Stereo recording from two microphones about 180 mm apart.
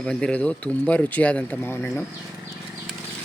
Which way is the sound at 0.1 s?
5° left (ahead or behind).